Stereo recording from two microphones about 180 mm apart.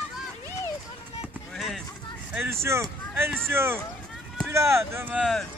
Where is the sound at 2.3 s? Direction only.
15° right (ahead or behind).